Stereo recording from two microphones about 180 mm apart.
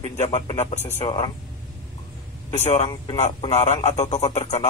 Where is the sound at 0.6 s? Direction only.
40° left (ahead or behind).